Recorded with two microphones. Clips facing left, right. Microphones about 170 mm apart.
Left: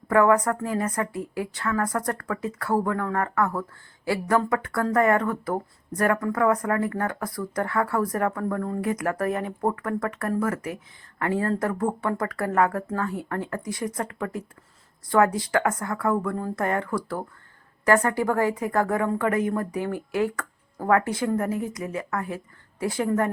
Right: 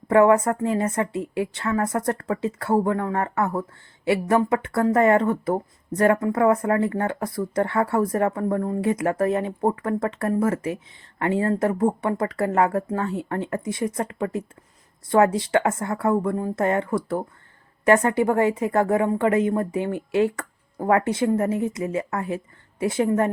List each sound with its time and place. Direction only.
0.1 s speech: 25° right (ahead or behind)